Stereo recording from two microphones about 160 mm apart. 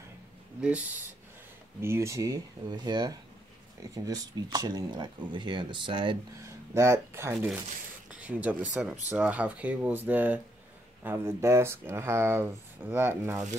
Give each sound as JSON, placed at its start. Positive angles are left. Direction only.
{"t": 0.6, "sound": "speech", "side_deg": -10}
{"t": 6.4, "sound": "speech", "side_deg": -15}